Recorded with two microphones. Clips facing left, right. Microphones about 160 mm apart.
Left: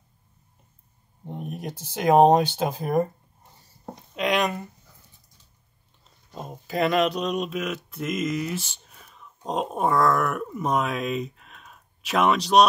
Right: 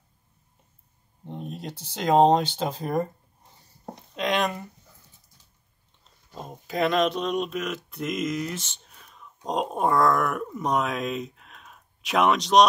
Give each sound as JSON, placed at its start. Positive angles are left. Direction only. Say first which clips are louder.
{"t": 1.3, "sound": "a sound", "louder": "left 2 dB", "side_deg": 15}
{"t": 2.0, "sound": "speech", "louder": "left 2 dB", "side_deg": 10}
{"t": 4.1, "sound": "speech", "louder": "left 2 dB", "side_deg": 5}
{"t": 6.3, "sound": "speech", "louder": "left 1 dB", "side_deg": 0}